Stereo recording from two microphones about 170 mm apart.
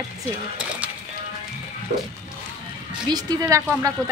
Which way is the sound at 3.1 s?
20° right (ahead or behind).